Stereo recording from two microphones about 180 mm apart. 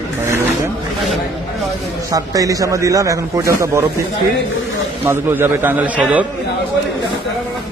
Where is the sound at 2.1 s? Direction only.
20° right (ahead or behind).